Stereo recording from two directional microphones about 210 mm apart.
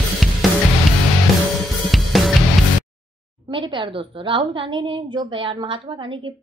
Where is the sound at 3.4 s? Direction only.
20° right (ahead or behind).